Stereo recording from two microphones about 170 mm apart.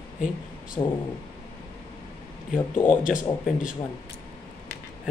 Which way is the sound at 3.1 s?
50° left (ahead or behind).